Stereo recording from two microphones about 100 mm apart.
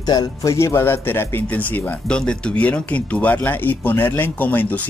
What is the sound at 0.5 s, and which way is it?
Speech, 25° left (ahead or behind).